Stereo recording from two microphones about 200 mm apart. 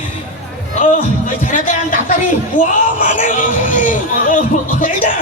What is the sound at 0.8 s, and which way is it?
Speech, 40° left (ahead or behind).